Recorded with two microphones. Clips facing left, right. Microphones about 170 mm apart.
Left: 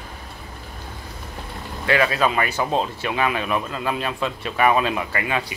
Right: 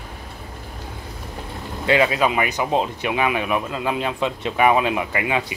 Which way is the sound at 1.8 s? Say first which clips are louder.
Right 2 dB; 20° right (ahead or behind).